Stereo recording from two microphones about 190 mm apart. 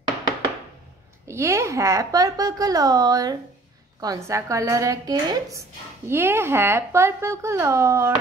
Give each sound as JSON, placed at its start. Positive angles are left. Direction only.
{"t": 1.2, "sound": "speech", "side_deg": -15}